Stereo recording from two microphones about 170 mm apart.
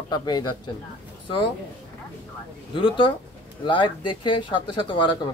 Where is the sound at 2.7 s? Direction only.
30° left (ahead or behind).